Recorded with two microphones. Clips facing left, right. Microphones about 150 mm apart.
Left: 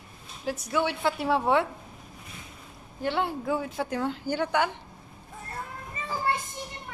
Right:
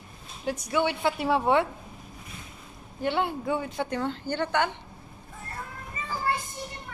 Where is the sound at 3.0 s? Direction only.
Centre (ahead or behind).